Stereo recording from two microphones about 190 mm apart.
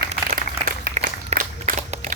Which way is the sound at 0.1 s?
45° right (ahead or behind).